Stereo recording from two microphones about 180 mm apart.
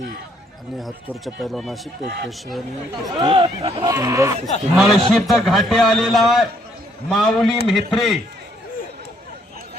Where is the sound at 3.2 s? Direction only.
25° right (ahead or behind).